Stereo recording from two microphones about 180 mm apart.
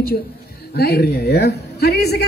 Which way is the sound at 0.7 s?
60° left (ahead or behind).